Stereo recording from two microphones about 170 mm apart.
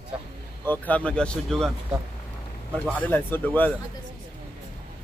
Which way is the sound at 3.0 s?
10° left (ahead or behind).